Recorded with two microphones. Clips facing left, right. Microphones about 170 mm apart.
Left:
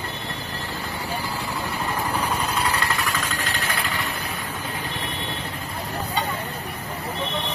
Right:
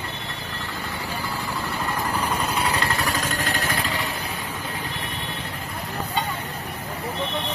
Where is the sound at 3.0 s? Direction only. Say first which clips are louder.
Right 2 dB; 40° right (ahead or behind).